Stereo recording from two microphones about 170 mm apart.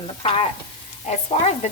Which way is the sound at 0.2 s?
35° left (ahead or behind).